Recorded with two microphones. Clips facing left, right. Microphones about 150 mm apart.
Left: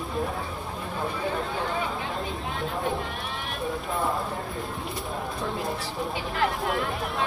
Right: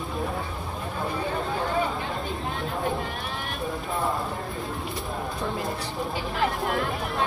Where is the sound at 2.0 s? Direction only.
Centre (ahead or behind).